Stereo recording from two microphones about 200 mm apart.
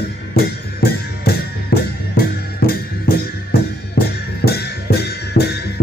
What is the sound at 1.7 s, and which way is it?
Music, 50° left (ahead or behind).